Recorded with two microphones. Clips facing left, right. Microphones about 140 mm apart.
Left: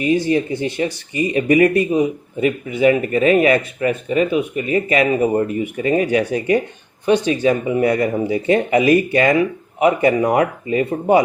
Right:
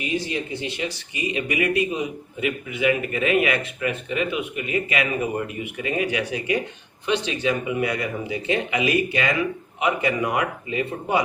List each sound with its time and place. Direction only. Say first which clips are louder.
0.0 s speech: left 10 dB; 45° left (ahead or behind)